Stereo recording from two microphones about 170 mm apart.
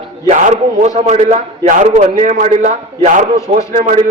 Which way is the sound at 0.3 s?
45° right (ahead or behind).